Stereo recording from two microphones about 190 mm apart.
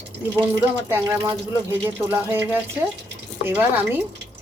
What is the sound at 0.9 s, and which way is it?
Speech, 15° right (ahead or behind).